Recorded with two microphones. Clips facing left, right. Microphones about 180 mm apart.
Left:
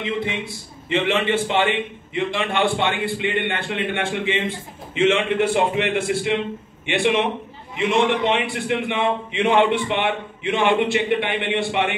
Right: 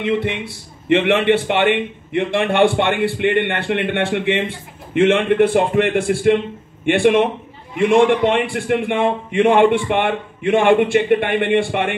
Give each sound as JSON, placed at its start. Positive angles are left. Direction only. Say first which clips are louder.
{"t": 0.0, "sound": "a man's voice", "louder": "right 5 dB", "side_deg": -65}